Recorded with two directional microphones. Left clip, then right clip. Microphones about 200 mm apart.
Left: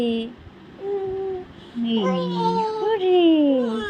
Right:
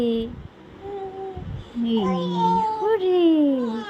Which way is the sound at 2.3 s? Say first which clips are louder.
Right 1 dB; 15° right (ahead or behind).